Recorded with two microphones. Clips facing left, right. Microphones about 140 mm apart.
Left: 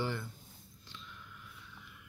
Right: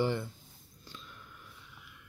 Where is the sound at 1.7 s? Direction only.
5° right (ahead or behind).